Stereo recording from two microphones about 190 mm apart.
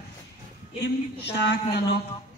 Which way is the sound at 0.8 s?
65° left (ahead or behind).